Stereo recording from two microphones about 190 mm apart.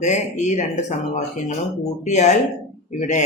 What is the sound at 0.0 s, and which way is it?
Speech, 40° left (ahead or behind).